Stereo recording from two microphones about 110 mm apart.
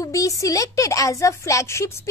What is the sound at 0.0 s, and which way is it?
A woman's voice, 30° left (ahead or behind).